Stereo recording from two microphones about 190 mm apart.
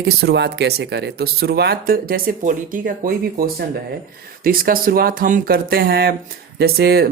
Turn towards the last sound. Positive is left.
turn(degrees=-55)  # may be behind; listen again after turning